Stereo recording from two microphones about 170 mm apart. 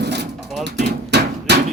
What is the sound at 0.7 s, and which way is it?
Hammer, 80° right.